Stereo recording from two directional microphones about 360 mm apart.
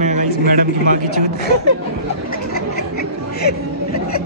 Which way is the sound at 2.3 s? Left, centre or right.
Left.